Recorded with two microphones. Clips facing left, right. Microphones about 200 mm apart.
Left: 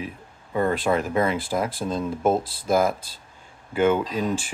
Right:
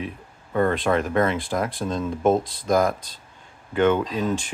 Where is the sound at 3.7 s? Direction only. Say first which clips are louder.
Right 1 dB; 5° left (ahead or behind).